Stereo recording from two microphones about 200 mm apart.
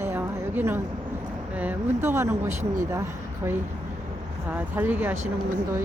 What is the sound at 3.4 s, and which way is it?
A woman's voice, 20° right (ahead or behind).